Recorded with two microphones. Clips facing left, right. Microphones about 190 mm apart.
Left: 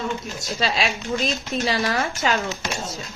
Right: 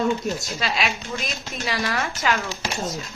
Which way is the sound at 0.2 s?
45° right (ahead or behind).